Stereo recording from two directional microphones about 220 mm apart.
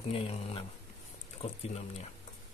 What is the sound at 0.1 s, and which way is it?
Speech, 25° left (ahead or behind).